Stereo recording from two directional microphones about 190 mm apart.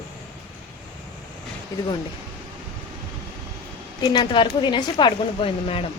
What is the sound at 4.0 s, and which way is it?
A woman's voice, 25° left (ahead or behind).